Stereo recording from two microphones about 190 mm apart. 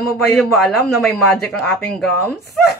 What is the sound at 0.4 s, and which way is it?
A woman's voice, centre (ahead or behind).